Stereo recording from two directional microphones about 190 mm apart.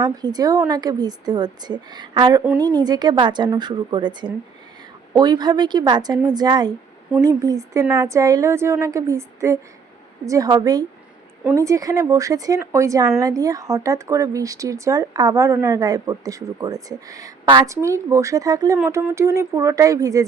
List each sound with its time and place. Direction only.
0.0 s a woman's voice: 20° right (ahead or behind)